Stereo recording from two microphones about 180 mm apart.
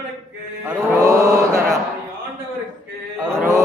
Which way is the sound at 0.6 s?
15° right (ahead or behind).